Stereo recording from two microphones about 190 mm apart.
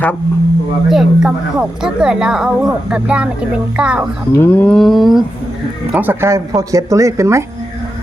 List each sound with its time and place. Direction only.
0.9 s a woman's voice: centre (ahead or behind)
4.4 s a woman's voice: 10° left (ahead or behind); by 7.4 s 15° right (ahead or behind)